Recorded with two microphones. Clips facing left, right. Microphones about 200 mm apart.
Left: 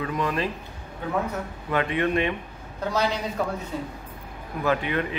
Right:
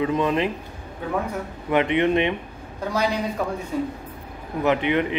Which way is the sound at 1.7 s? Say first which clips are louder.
Right 5 dB; 20° right (ahead or behind).